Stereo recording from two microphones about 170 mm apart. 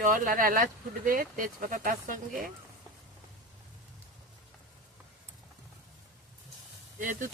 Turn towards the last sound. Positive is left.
turn(degrees=-50)  # may be behind; listen again after turning